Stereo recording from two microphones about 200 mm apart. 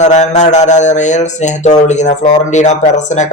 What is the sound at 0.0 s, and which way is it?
Speech, 35° left (ahead or behind).